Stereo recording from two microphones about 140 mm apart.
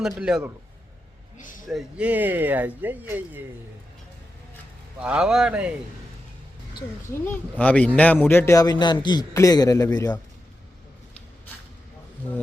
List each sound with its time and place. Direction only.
0.0 s a man's voice: 5° right (ahead or behind)
1.4 s speech: 70° left (ahead or behind)
1.6 s speech: 5° right (ahead or behind)
5.0 s speech: 5° right (ahead or behind)
7.3 s a man's voice: 10° left (ahead or behind)